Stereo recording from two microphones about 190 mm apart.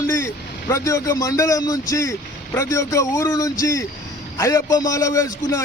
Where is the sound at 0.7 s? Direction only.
15° left (ahead or behind).